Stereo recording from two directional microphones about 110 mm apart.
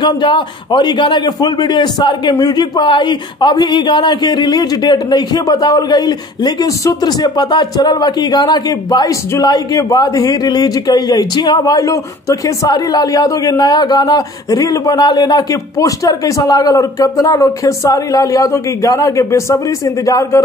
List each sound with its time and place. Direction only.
0.0 s a man's voice: 45° left (ahead or behind); by 20.4 s 30° left (ahead or behind)